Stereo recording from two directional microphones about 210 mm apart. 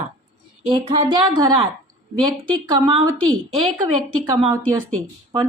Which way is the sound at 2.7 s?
25° right (ahead or behind).